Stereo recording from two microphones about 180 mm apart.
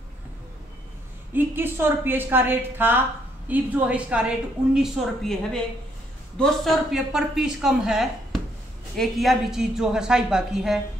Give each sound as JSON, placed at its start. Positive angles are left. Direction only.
{"t": 1.3, "sound": "a woman's voice", "side_deg": -10}